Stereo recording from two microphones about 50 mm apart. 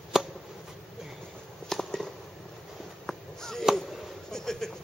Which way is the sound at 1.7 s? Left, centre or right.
Centre.